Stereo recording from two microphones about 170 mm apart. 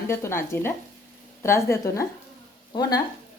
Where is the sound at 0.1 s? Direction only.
15° left (ahead or behind).